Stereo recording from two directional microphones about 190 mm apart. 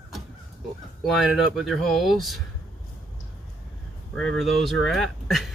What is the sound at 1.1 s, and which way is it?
Speech, centre (ahead or behind).